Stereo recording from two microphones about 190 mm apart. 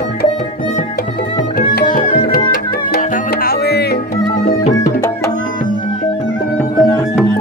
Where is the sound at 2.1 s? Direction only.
50° left (ahead or behind).